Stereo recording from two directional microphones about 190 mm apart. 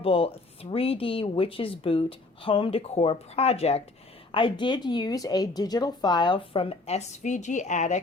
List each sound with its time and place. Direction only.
0.0 s a woman's voice: 30° left (ahead or behind)